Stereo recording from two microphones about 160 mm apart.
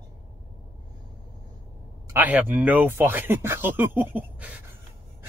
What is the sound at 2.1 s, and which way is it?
Speech, 10° right (ahead or behind).